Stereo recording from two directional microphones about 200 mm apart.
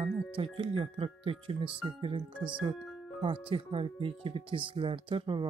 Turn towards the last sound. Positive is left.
turn(degrees=-25)  # may be behind; listen again after turning